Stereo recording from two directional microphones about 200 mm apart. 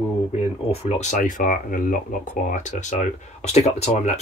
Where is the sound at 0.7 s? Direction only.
35° left (ahead or behind).